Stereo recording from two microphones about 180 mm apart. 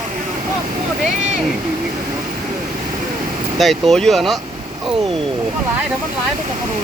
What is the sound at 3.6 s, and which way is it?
Speech, centre (ahead or behind).